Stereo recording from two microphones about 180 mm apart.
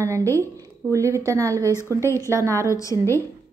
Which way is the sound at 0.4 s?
15° right (ahead or behind).